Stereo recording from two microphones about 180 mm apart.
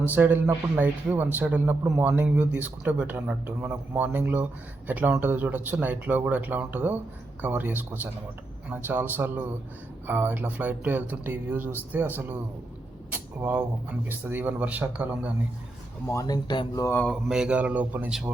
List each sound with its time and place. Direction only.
0.1 s speech: 10° right (ahead or behind)
13.1 s a sound: 10° right (ahead or behind)
14.1 s speech: 10° right (ahead or behind)
16.0 s speech: 20° left (ahead or behind)
17.2 s a man's voice: 5° right (ahead or behind)